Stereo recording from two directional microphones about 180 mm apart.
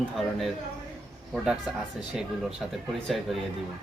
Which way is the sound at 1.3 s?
5° right (ahead or behind).